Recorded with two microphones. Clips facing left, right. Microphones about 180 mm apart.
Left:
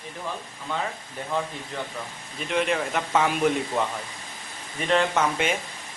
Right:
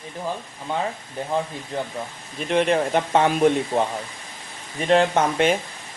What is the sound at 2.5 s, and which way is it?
Speech, 35° right (ahead or behind).